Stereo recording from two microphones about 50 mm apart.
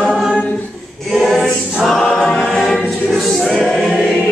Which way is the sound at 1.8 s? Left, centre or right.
Centre.